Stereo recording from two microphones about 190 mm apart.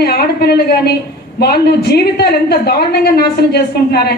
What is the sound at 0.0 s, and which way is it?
A woman's voice, 55° left (ahead or behind).